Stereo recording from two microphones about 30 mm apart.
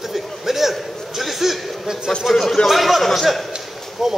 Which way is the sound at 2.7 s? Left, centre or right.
Centre.